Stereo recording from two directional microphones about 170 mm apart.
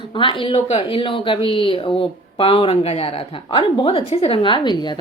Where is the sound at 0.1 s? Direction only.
30° left (ahead or behind).